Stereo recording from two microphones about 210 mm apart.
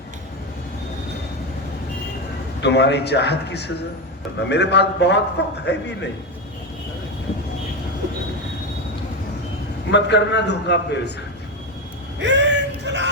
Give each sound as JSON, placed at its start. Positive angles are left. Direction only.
{"t": 2.6, "sound": "a man's voice", "side_deg": 55}
{"t": 9.9, "sound": "a man's voice", "side_deg": 55}
{"t": 12.2, "sound": "yell", "side_deg": -55}